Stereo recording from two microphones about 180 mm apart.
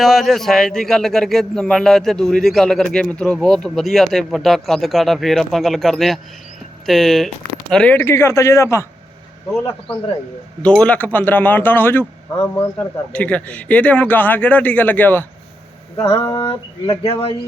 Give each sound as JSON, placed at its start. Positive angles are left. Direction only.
{"t": 0.0, "sound": "a man's voice", "side_deg": 0}
{"t": 10.6, "sound": "speech", "side_deg": 5}